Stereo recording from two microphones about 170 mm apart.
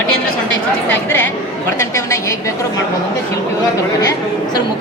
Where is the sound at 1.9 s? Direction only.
15° left (ahead or behind).